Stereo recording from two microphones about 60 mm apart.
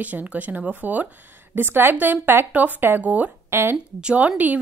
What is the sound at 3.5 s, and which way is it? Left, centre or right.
Speech, right.